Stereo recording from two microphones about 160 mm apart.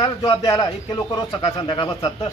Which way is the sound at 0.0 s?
25° left (ahead or behind).